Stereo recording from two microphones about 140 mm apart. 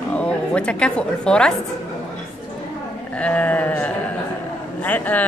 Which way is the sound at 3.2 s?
10° left (ahead or behind).